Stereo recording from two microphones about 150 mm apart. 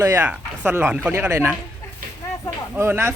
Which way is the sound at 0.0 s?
15° right (ahead or behind).